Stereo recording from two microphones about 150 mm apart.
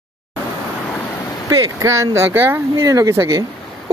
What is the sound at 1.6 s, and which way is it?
Speech, 20° right (ahead or behind).